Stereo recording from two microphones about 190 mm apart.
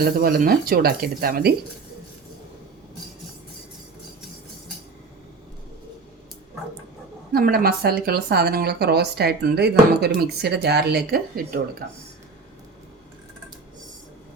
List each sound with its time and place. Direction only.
0.0 s speech: 50° right (ahead or behind)
7.3 s speech: 55° right (ahead or behind)